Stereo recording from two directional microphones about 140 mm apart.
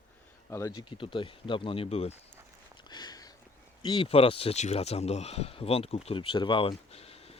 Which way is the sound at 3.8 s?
35° left (ahead or behind).